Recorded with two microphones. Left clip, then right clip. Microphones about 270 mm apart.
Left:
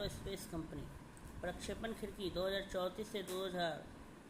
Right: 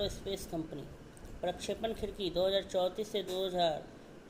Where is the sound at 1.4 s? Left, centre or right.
Centre.